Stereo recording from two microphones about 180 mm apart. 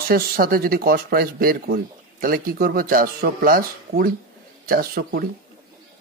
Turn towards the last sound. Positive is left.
turn(degrees=-55)  # may be behind; listen again after turning